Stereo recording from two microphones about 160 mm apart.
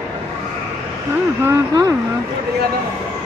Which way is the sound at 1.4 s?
20° right (ahead or behind).